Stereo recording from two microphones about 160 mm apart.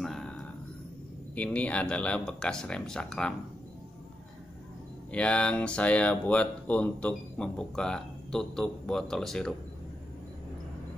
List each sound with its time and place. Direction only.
0.0 s a sound: 5° left (ahead or behind)
1.3 s speech: 10° left (ahead or behind)
5.1 s speech: 5° left (ahead or behind)